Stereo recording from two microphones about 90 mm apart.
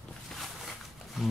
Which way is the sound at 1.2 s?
Centre (ahead or behind).